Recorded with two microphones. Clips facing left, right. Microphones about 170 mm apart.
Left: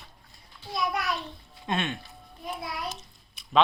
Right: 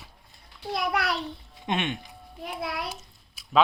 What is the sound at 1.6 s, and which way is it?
Speech, 15° right (ahead or behind).